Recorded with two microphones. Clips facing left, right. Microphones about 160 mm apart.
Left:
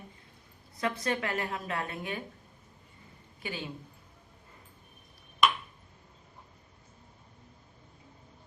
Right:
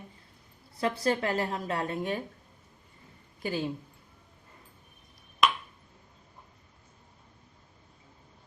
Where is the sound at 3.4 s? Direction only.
40° right (ahead or behind).